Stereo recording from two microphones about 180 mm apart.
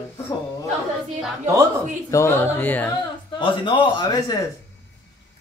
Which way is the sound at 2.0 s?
15° left (ahead or behind).